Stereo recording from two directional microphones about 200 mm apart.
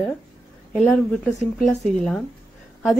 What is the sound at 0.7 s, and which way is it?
Speech, centre (ahead or behind).